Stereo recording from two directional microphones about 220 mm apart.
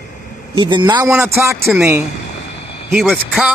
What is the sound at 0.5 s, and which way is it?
Speech, 20° right (ahead or behind).